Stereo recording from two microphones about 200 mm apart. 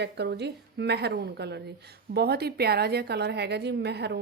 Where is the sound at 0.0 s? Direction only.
55° right (ahead or behind).